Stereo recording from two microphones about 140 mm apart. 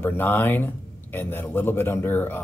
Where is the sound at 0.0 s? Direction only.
15° left (ahead or behind).